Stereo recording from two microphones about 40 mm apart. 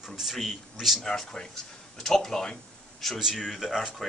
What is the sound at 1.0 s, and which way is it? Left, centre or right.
Speech, centre.